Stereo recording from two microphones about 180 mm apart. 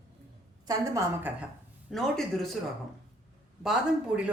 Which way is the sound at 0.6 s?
15° right (ahead or behind).